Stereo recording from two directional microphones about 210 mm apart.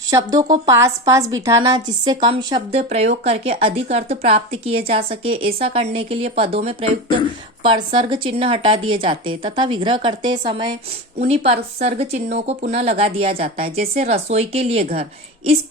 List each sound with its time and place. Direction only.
0.1 s a woman's voice: 15° right (ahead or behind)